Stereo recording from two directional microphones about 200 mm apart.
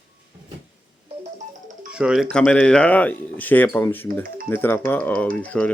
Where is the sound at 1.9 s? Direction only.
5° right (ahead or behind).